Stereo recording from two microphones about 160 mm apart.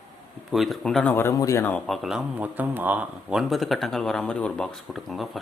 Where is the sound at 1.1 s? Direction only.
15° left (ahead or behind).